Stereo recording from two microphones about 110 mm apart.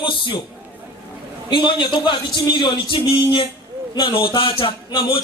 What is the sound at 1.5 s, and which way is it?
A man's voice, 45° left (ahead or behind).